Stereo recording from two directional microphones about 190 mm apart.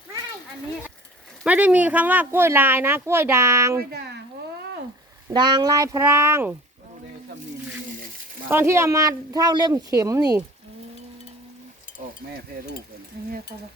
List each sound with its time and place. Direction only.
1.5 s speech: 10° right (ahead or behind)
3.8 s speech: 55° right (ahead or behind)
5.3 s speech: 20° right (ahead or behind)
8.4 s speech: 10° right (ahead or behind)